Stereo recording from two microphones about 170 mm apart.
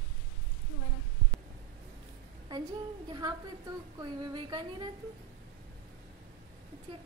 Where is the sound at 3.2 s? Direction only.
25° right (ahead or behind).